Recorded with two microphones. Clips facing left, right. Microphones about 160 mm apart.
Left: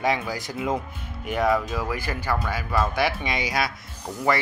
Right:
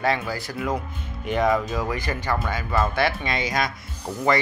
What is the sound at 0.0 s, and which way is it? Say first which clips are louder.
Speech: right 1 dB; 15° left (ahead or behind).